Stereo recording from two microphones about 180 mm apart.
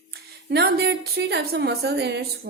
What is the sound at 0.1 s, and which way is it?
A woman's voice, 65° right (ahead or behind).